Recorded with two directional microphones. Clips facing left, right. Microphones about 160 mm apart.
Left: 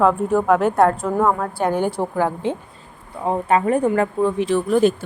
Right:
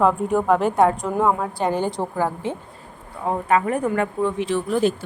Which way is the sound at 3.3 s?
30° left (ahead or behind).